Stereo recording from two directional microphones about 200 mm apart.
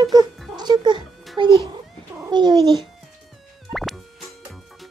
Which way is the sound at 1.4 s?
25° right (ahead or behind).